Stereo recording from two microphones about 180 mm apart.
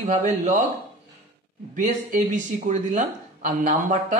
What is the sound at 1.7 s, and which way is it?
Speech, 45° right (ahead or behind).